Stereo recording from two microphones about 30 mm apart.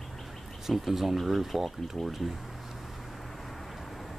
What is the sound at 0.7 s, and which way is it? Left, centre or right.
Speech, centre.